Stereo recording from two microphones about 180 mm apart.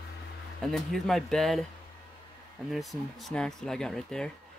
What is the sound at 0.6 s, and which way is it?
Speech, centre (ahead or behind).